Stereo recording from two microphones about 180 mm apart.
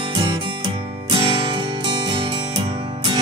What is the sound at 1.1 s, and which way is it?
Music, 30° right (ahead or behind).